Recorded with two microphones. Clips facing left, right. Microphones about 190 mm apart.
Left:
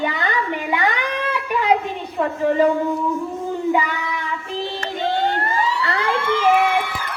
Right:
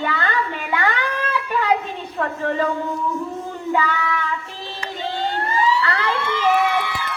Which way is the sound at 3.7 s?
15° left (ahead or behind).